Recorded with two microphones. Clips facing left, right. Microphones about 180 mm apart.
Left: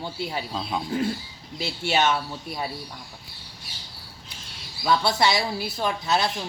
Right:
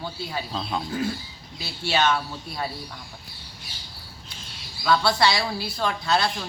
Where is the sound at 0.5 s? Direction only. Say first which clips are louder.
Even; 5° left (ahead or behind).